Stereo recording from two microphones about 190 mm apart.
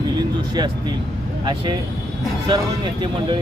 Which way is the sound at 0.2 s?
25° right (ahead or behind).